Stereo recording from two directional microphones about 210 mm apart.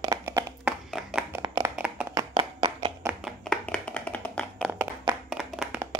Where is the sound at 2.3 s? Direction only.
25° right (ahead or behind).